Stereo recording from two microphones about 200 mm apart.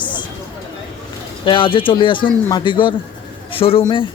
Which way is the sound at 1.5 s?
25° left (ahead or behind).